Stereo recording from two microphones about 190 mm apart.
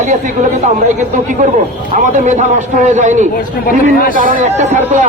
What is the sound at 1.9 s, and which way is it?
Speech, 40° right (ahead or behind).